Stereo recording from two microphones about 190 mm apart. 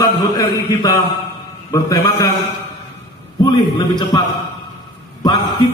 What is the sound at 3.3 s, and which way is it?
Speech, 20° left (ahead or behind).